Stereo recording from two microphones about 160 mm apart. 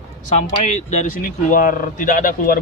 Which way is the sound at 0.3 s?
45° left (ahead or behind).